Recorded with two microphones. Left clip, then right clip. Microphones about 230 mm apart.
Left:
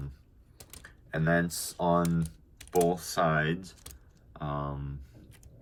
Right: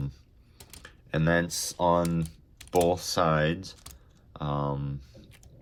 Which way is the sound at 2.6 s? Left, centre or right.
Centre.